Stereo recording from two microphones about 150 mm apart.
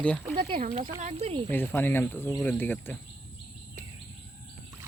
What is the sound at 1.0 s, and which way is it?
Speech, 50° right (ahead or behind).